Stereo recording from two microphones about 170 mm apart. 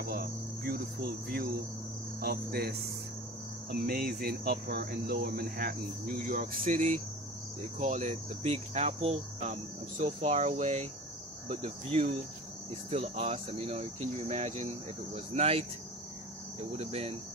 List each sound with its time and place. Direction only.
0.0 s cricket: 60° right (ahead or behind)
1.3 s speech: 60° right (ahead or behind)
3.7 s speech: 60° right (ahead or behind)
7.8 s cricket: 45° right (ahead or behind)
16.7 s cricket: 35° right (ahead or behind)